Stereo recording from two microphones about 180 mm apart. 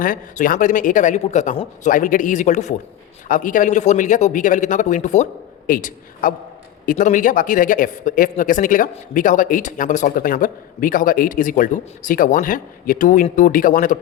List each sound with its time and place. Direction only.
0.0 s speech: 50° left (ahead or behind)